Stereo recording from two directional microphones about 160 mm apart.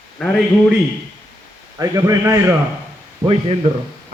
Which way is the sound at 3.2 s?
35° right (ahead or behind).